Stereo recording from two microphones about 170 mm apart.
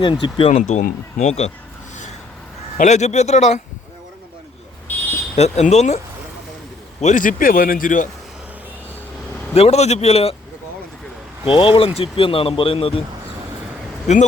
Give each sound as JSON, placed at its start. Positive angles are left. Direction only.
{"t": 0.0, "sound": "speech", "side_deg": 30}
{"t": 0.5, "sound": "a man's voice", "side_deg": 50}
{"t": 2.7, "sound": "a man's voice", "side_deg": 45}
{"t": 5.4, "sound": "speech", "side_deg": 40}
{"t": 7.0, "sound": "a man's voice", "side_deg": 50}
{"t": 9.6, "sound": "speech", "side_deg": 40}
{"t": 11.4, "sound": "speech", "side_deg": 30}
{"t": 14.1, "sound": "speech", "side_deg": 40}